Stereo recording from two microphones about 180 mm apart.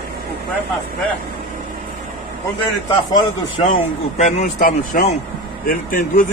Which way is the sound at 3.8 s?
40° left (ahead or behind).